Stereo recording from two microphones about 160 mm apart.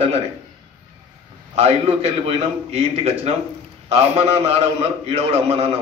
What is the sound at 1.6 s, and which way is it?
A man's voice, 45° right (ahead or behind).